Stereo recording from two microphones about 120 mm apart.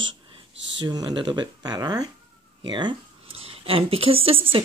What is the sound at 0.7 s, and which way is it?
Speech, 35° right (ahead or behind).